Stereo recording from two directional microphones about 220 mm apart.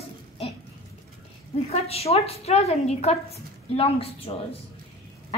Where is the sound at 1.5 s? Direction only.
30° left (ahead or behind).